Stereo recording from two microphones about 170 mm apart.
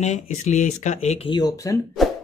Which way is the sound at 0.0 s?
40° left (ahead or behind).